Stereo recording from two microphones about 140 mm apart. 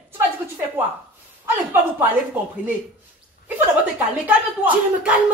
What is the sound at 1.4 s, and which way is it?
Speech, 15° right (ahead or behind).